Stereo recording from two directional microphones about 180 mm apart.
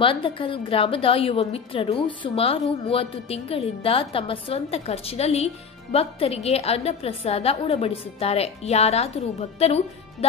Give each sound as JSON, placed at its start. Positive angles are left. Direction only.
{"t": 0.0, "sound": "a woman's voice", "side_deg": 30}